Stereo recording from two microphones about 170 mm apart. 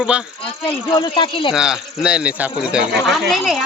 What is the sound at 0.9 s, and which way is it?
Speech, 25° left (ahead or behind).